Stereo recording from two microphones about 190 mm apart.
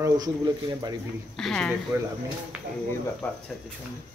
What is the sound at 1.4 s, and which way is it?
Speech, 5° left (ahead or behind).